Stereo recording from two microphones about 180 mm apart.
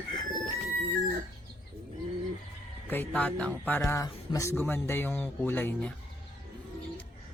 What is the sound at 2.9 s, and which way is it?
Speech, 10° left (ahead or behind).